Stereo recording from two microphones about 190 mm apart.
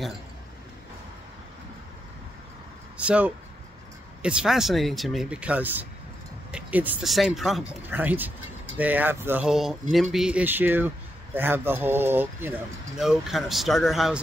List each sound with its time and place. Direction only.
3.0 s speech: 5° right (ahead or behind)